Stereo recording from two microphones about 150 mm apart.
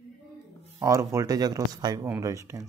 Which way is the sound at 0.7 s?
20° right (ahead or behind).